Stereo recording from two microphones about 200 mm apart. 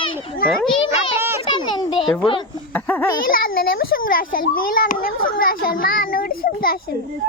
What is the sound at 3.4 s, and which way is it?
A child's voice, 45° left (ahead or behind).